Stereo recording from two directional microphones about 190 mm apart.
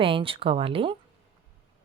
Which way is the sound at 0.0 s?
30° right (ahead or behind).